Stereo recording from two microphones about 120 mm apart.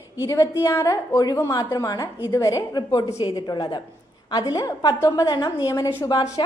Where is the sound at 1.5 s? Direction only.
35° left (ahead or behind).